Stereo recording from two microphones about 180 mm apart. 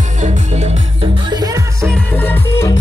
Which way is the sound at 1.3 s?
20° right (ahead or behind).